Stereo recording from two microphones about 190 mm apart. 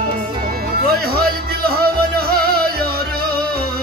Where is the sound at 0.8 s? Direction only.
55° right (ahead or behind).